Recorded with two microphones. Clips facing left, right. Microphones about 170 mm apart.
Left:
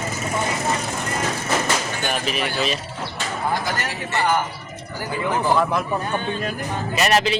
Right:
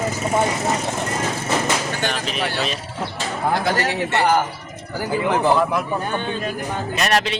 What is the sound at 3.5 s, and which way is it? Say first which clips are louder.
Speech: right 5 dB; 65° right (ahead or behind).